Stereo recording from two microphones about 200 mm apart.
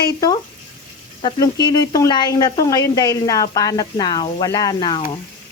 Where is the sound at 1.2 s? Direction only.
20° left (ahead or behind).